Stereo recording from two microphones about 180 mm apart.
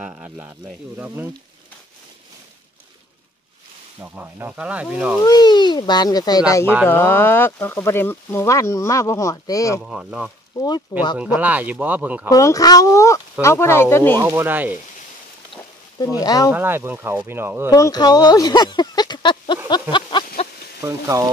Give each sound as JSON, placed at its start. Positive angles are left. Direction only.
{"t": 0.0, "sound": "speech", "side_deg": -10}
{"t": 4.0, "sound": "speech", "side_deg": -10}
{"t": 5.2, "sound": "speech", "side_deg": 25}
{"t": 9.8, "sound": "speech", "side_deg": -5}
{"t": 10.6, "sound": "speech", "side_deg": 25}
{"t": 11.1, "sound": "speech", "side_deg": -10}
{"t": 12.3, "sound": "speech", "side_deg": 20}
{"t": 14.1, "sound": "speech", "side_deg": -15}
{"t": 16.2, "sound": "speech", "side_deg": 20}
{"t": 16.5, "sound": "speech", "side_deg": -10}
{"t": 17.6, "sound": "speech", "side_deg": 20}
{"t": 19.7, "sound": "a sound", "side_deg": 25}
{"t": 20.8, "sound": "speech", "side_deg": -15}